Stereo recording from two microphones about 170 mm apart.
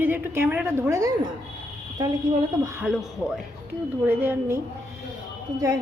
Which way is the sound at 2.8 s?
Centre (ahead or behind).